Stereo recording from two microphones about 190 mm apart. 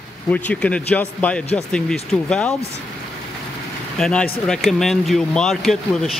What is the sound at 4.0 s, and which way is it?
Speech, 5° left (ahead or behind).